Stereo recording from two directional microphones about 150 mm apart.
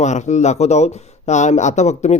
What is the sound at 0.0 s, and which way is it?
Speech, 50° left (ahead or behind).